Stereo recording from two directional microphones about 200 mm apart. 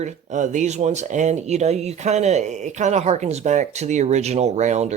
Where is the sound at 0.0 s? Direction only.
35° right (ahead or behind).